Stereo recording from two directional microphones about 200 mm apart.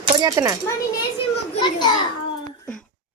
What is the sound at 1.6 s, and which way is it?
Speech, 20° left (ahead or behind).